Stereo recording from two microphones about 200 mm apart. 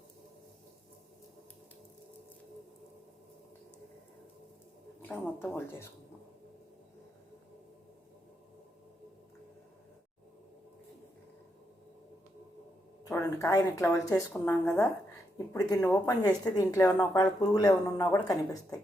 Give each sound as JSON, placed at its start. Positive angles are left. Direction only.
{"t": 5.0, "sound": "speech", "side_deg": 10}
{"t": 13.1, "sound": "speech", "side_deg": 15}